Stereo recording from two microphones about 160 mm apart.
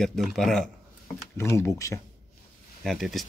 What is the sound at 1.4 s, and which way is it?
Speech, 15° left (ahead or behind).